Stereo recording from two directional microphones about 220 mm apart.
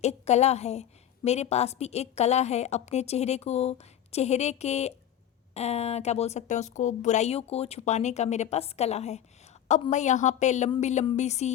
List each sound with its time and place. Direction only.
0.0 s a woman's voice: 30° left (ahead or behind)